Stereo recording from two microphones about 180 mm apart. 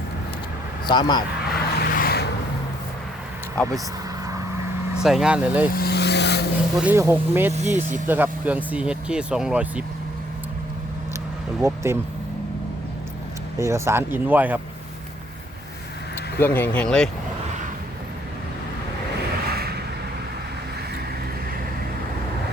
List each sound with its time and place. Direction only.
0.9 s speech: 25° left (ahead or behind)
1.5 s vehicle: 60° left (ahead or behind)
4.9 s speech: 5° right (ahead or behind)
5.7 s vehicle: 60° left (ahead or behind)
6.7 s speech: 10° right (ahead or behind)
7.5 s speech: 40° right (ahead or behind)
8.0 s speech: 10° right (ahead or behind)
11.6 s speech: 15° right (ahead or behind)
13.6 s speech: 15° right (ahead or behind)
16.4 s speech: 10° left (ahead or behind)
19.5 s vehicle: 60° right (ahead or behind)